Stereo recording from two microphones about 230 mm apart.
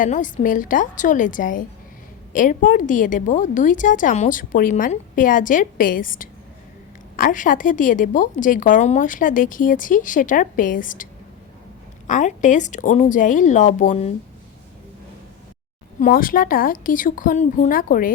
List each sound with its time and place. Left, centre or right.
0.0 s a woman's voice: left
16.0 s a woman's voice: left